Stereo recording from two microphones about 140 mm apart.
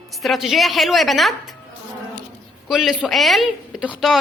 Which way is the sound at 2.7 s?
Centre (ahead or behind).